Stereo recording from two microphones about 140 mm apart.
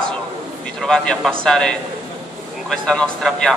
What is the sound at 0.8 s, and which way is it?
A man's voice, 5° left (ahead or behind).